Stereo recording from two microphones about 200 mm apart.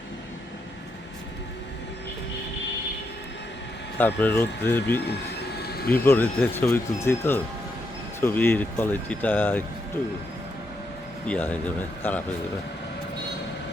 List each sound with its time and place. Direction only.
3.9 s speech: 10° left (ahead or behind)
5.6 s a sound: 50° left (ahead or behind)
6.1 s speech: 10° left (ahead or behind)
11.3 s speech: 10° left (ahead or behind)